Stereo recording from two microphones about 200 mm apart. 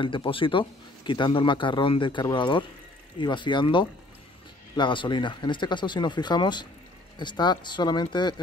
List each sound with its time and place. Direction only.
0.0 s speech: 25° left (ahead or behind)